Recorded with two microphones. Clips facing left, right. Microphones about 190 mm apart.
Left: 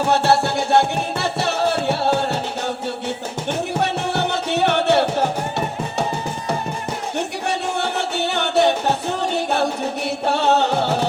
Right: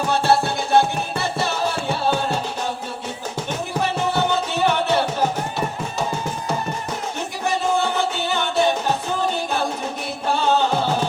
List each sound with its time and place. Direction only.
0.1 s music: 70° left (ahead or behind)
3.8 s music: 70° left (ahead or behind)
7.4 s music: 70° left (ahead or behind)